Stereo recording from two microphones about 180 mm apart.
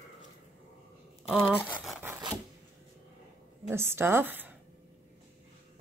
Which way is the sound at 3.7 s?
15° right (ahead or behind).